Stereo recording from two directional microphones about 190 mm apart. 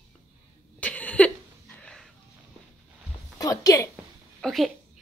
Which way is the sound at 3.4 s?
20° left (ahead or behind).